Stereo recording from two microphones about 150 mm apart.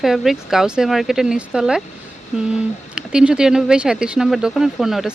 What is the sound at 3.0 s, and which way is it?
Speech, 5° right (ahead or behind).